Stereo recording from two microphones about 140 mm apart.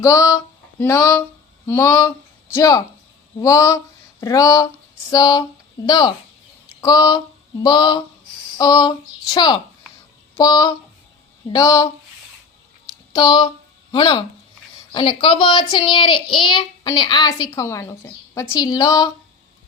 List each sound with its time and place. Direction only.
0.0 s speech: 25° left (ahead or behind)
13.1 s speech: 30° left (ahead or behind)